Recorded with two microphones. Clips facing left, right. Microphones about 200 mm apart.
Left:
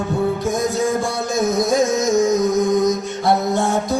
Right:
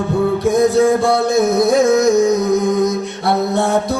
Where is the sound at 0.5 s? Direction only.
65° right (ahead or behind).